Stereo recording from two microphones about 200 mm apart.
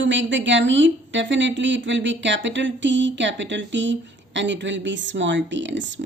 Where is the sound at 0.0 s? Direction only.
65° right (ahead or behind).